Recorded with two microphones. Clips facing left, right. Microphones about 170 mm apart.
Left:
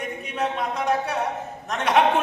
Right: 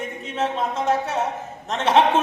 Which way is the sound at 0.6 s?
25° right (ahead or behind).